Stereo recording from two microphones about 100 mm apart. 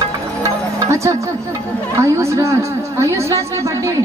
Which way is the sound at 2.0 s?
30° right (ahead or behind).